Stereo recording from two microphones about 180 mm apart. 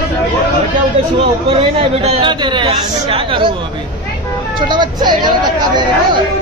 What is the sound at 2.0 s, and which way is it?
Speech, 30° right (ahead or behind).